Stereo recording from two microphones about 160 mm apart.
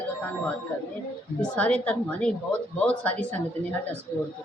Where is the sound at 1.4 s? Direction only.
10° left (ahead or behind).